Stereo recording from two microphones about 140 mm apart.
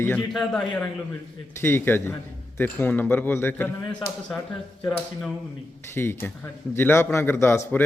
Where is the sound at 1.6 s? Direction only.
15° left (ahead or behind).